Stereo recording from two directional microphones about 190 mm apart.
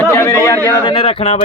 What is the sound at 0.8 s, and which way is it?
Speech, 25° left (ahead or behind).